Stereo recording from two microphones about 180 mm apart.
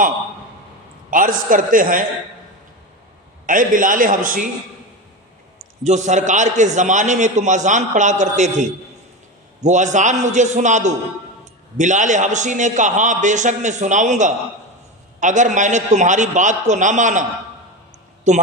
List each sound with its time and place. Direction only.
1.1 s a man's voice: 50° right (ahead or behind)
3.4 s a man's voice: 50° right (ahead or behind)
5.8 s a man's voice: 40° right (ahead or behind)
9.6 s a man's voice: 40° right (ahead or behind)
18.3 s a man's voice: 40° right (ahead or behind)